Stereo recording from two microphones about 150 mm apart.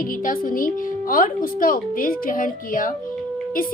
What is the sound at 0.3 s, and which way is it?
Speech, 65° left (ahead or behind).